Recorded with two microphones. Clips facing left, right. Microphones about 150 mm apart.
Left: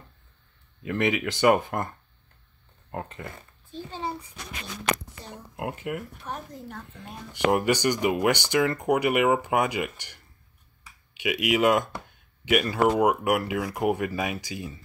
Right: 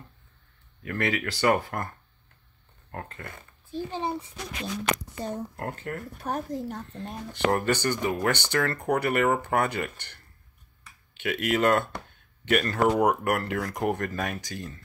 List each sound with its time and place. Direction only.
0.8 s speech: 20° left (ahead or behind)
3.7 s a child's voice: 15° right (ahead or behind)
5.6 s speech: 10° left (ahead or behind)
6.2 s speech: 40° right (ahead or behind)
7.3 s speech: 15° left (ahead or behind)